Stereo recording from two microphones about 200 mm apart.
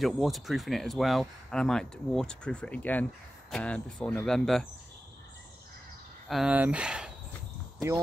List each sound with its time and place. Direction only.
0.0 s speech: centre (ahead or behind)
6.2 s speech: centre (ahead or behind)